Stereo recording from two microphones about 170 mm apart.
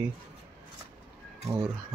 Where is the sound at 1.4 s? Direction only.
15° right (ahead or behind).